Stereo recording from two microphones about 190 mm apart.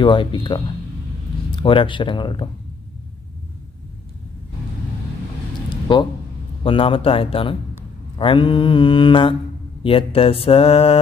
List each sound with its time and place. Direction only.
0.0 s mantra: 25° left (ahead or behind)
5.9 s mantra: 25° left (ahead or behind)